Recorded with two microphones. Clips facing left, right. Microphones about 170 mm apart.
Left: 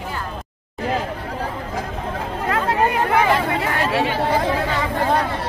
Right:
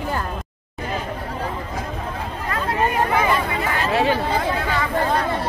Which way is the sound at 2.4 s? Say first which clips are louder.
Left 3 dB; 70° left (ahead or behind).